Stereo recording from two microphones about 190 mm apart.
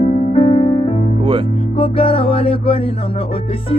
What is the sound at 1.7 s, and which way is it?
Music, 30° left (ahead or behind).